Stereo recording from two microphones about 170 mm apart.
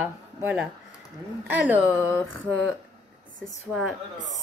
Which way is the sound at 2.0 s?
15° left (ahead or behind).